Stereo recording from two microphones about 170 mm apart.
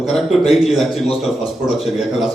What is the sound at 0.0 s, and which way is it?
A man's voice, centre (ahead or behind).